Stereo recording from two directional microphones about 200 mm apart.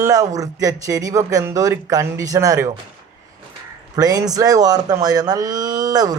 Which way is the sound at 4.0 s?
20° right (ahead or behind).